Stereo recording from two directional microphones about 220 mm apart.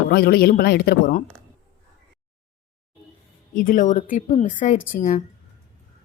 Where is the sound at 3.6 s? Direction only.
35° left (ahead or behind).